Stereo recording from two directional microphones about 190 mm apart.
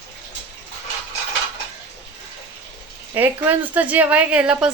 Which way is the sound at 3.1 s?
10° right (ahead or behind).